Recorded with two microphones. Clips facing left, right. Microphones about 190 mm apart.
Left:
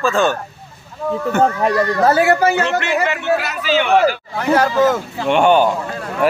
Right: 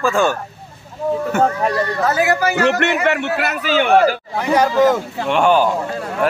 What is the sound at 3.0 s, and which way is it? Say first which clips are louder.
A man's voice: even; 60° right (ahead or behind).